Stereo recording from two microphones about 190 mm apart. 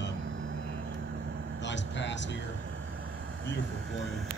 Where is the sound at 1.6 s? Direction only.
70° left (ahead or behind).